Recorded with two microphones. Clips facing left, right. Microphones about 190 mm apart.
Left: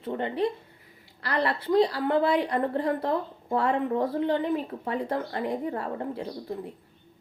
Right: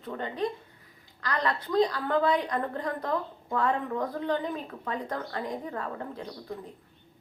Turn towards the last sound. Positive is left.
turn(degrees=25)  # may be behind; listen again after turning